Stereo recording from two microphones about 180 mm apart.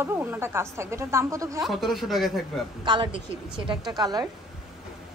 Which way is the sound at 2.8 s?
25° right (ahead or behind).